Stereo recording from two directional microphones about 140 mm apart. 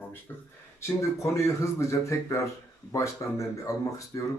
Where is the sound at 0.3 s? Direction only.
15° left (ahead or behind).